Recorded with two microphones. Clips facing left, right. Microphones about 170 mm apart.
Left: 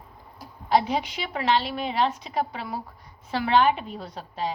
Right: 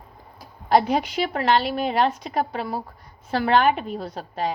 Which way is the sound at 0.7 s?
55° right (ahead or behind).